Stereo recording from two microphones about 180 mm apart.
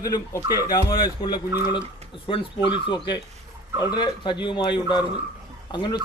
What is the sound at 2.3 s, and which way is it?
A man's voice, 30° left (ahead or behind).